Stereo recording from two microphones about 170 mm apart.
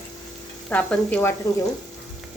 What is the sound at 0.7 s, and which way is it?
Speech, 10° left (ahead or behind).